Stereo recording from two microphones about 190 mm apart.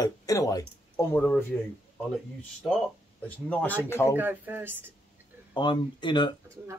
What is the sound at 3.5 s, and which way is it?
Speech, 10° left (ahead or behind).